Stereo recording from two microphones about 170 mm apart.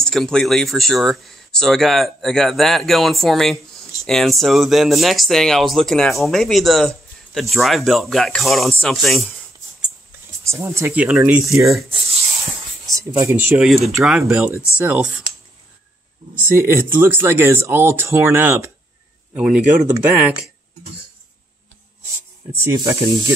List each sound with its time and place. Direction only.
0.0 s speech: 5° left (ahead or behind)
10.4 s speech: 15° right (ahead or behind)
12.9 s speech: 15° right (ahead or behind)
13.9 s speech: centre (ahead or behind)
14.5 s speech: 15° left (ahead or behind)
14.8 s speech: 10° right (ahead or behind)
16.4 s speech: 15° right (ahead or behind)
22.5 s speech: 20° right (ahead or behind)